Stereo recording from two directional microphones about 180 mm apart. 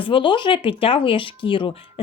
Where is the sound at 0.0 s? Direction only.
30° left (ahead or behind).